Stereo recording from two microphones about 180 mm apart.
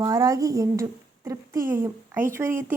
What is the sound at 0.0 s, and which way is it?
Speech, 20° right (ahead or behind).